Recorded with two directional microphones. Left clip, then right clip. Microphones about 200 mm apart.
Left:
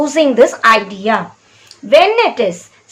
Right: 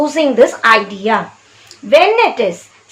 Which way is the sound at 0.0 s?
15° left (ahead or behind).